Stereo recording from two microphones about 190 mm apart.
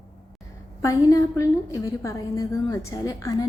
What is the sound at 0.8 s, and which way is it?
A woman's voice, 15° left (ahead or behind).